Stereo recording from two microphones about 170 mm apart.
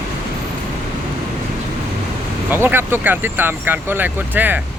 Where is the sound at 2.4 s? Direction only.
15° right (ahead or behind).